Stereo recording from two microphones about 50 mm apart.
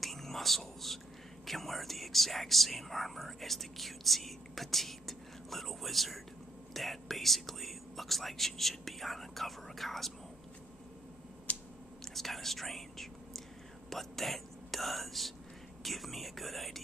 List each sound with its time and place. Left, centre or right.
0.0 s whispering: centre
1.4 s speech: centre
11.5 s a sound: left
12.0 s speech: centre